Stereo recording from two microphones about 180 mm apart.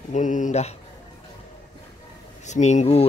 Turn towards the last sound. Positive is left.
turn(degrees=35)  # may be behind; listen again after turning